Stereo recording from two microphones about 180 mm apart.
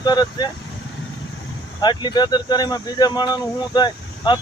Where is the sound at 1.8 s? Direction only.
25° left (ahead or behind).